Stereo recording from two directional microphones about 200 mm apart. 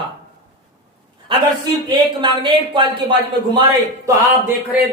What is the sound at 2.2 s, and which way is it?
A man's voice, 25° right (ahead or behind).